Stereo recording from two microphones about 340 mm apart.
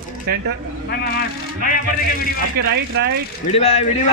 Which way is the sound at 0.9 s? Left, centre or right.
Left.